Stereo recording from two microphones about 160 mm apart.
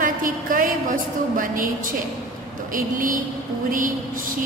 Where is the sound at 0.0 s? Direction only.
60° right (ahead or behind).